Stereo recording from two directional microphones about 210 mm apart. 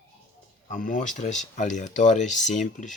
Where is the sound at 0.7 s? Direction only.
40° left (ahead or behind).